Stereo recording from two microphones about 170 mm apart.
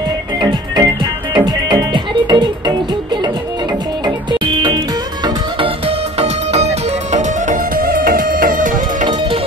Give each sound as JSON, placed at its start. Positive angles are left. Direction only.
{"t": 0.4, "sound": "music", "side_deg": -25}
{"t": 4.0, "sound": "music", "side_deg": -25}